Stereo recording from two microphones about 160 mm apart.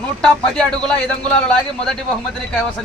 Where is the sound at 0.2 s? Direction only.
5° left (ahead or behind).